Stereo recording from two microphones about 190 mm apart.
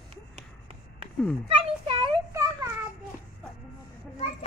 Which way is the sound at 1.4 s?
30° right (ahead or behind).